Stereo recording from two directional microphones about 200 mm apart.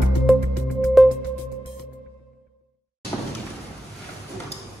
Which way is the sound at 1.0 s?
Centre (ahead or behind).